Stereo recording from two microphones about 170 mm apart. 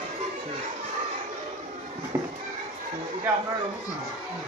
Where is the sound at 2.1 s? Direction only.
15° right (ahead or behind).